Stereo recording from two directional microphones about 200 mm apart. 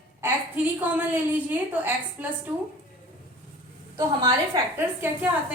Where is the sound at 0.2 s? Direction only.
10° right (ahead or behind).